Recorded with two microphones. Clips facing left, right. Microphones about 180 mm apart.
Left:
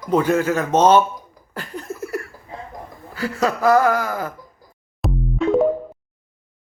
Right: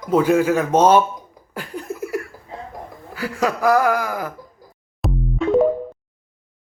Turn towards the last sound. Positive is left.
turn(degrees=0)  # may be behind; listen again after turning